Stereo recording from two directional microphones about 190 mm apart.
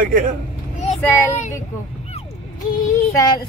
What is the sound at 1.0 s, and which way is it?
Child singing, 10° left (ahead or behind).